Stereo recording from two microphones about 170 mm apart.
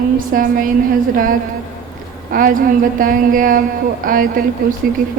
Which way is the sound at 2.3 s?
55° right (ahead or behind).